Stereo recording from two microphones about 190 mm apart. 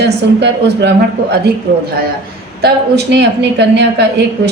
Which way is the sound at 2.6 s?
60° right (ahead or behind).